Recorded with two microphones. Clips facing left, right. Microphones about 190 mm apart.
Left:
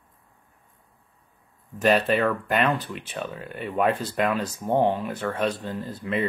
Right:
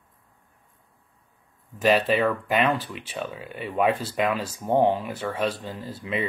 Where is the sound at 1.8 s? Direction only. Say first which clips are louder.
Even; 5° right (ahead or behind).